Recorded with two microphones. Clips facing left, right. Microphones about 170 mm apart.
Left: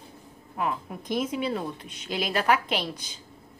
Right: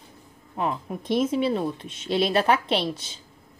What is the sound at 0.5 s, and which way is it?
A woman's voice, 25° right (ahead or behind).